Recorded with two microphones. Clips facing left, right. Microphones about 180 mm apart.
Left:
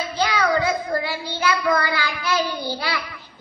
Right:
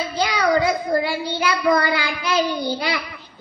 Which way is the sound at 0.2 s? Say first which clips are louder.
Right 2 dB; 15° right (ahead or behind).